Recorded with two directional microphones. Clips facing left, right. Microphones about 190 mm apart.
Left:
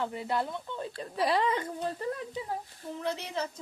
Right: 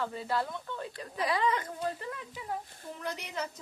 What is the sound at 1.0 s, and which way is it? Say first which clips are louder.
Speech: left 3 dB; 30° left (ahead or behind).